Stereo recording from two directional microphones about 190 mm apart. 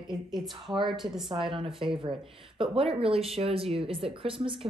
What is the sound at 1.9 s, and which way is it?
Speech, 25° right (ahead or behind).